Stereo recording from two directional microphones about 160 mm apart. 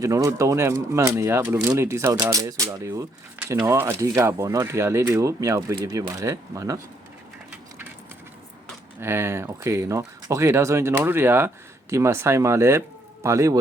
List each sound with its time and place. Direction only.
0.0 s speech: 20° right (ahead or behind)
9.0 s speech: 15° right (ahead or behind)